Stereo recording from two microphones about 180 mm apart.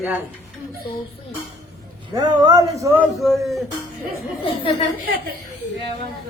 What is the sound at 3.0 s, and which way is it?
Speech, centre (ahead or behind).